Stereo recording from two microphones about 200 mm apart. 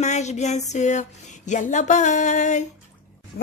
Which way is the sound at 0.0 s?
35° left (ahead or behind).